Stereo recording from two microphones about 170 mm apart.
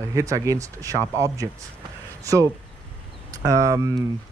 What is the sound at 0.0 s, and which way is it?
Speech, 20° right (ahead or behind).